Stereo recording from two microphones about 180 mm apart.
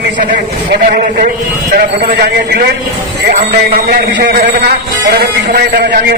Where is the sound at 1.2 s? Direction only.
55° right (ahead or behind).